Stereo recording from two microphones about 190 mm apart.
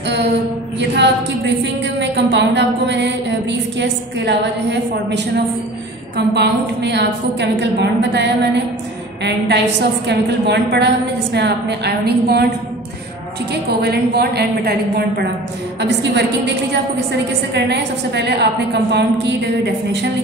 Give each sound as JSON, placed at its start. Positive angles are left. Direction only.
{"t": 0.7, "sound": "a woman's voice", "side_deg": -65}